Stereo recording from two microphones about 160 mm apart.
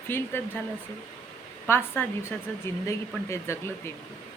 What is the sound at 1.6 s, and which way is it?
A woman's voice, 15° left (ahead or behind).